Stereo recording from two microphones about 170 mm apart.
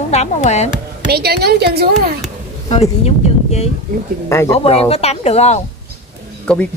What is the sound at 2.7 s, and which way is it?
Speech, 40° left (ahead or behind).